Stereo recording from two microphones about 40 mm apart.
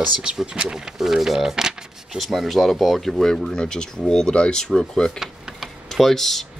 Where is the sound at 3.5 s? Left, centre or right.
Centre.